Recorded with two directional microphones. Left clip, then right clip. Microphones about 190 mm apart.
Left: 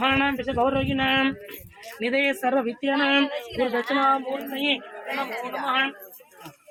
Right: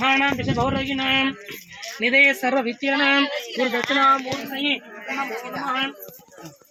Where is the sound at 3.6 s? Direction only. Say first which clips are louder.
Right 3 dB; 20° right (ahead or behind).